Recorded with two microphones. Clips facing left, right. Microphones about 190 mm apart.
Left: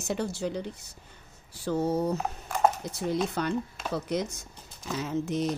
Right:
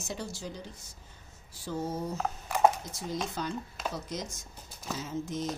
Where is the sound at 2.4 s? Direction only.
5° right (ahead or behind).